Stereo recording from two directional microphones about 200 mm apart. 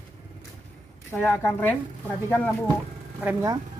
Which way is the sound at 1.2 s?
10° left (ahead or behind).